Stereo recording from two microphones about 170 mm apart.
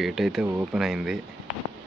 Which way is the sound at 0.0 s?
Centre (ahead or behind).